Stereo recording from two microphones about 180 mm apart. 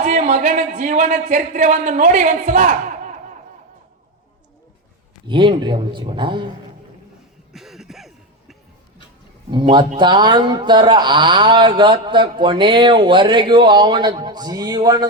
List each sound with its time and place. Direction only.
0.0 s speech: 45° right (ahead or behind)
5.3 s speech: 25° right (ahead or behind)
7.5 s a sound: centre (ahead or behind)
9.5 s speech: 25° right (ahead or behind)